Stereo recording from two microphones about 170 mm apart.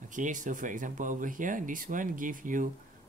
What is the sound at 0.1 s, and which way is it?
Speech, 50° right (ahead or behind).